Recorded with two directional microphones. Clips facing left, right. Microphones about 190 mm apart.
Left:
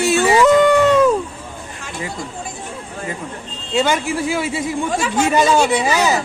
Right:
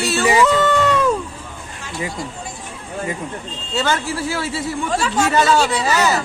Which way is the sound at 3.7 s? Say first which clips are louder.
Left 3 dB; 15° left (ahead or behind).